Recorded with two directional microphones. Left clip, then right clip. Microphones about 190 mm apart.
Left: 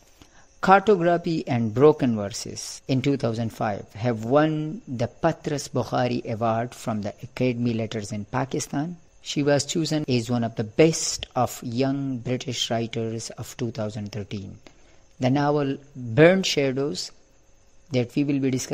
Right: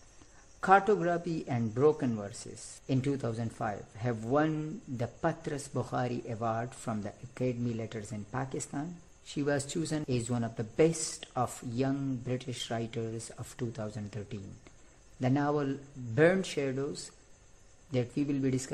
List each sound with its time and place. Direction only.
0.6 s a man's voice: 45° left (ahead or behind)